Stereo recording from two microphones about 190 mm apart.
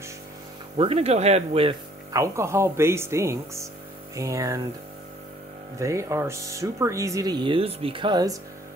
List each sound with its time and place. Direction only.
0.7 s speech: 30° right (ahead or behind)
2.1 s speech: 15° right (ahead or behind)
5.8 s speech: 15° right (ahead or behind)